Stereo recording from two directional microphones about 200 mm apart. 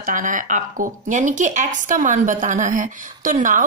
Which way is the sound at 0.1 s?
40° right (ahead or behind).